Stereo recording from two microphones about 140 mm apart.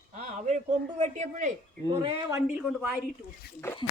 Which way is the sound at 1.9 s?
40° right (ahead or behind).